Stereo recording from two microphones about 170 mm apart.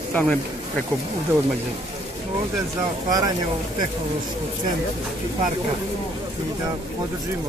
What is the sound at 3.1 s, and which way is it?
Speech, 20° right (ahead or behind).